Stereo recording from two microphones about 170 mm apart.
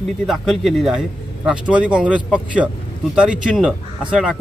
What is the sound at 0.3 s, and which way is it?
A man's voice, centre (ahead or behind).